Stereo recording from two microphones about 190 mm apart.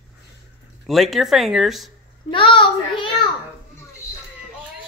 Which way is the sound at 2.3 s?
25° left (ahead or behind).